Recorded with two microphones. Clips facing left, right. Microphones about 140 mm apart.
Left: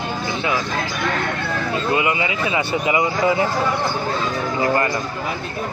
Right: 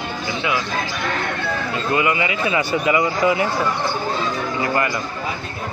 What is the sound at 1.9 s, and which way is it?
Speech, 20° left (ahead or behind).